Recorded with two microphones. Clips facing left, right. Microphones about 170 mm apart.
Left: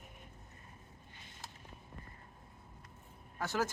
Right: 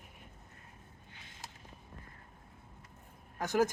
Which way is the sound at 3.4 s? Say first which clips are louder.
Right 6 dB; 15° right (ahead or behind).